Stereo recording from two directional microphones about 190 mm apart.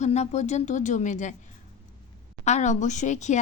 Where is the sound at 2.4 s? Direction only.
40° left (ahead or behind).